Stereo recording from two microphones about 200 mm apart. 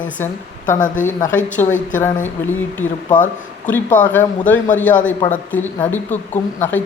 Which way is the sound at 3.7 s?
10° left (ahead or behind).